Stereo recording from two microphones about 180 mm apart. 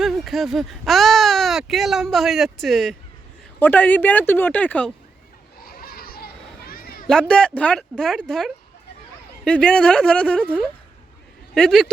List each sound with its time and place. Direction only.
0.0 s speech: centre (ahead or behind)
5.6 s children playing: 55° left (ahead or behind)
7.1 s speech: 5° left (ahead or behind)